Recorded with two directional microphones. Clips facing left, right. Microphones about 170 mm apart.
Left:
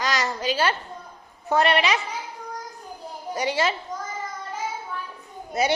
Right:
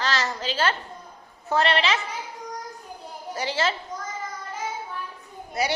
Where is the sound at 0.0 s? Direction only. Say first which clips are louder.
Left 2 dB; 15° left (ahead or behind).